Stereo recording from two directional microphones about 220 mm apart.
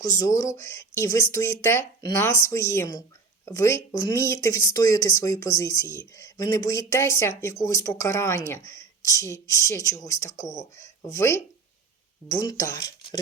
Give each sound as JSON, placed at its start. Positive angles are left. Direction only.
{"t": 0.0, "sound": "speech", "side_deg": 15}